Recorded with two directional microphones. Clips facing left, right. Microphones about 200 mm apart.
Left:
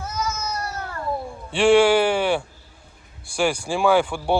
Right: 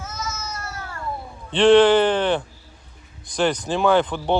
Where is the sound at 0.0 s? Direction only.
35° left (ahead or behind).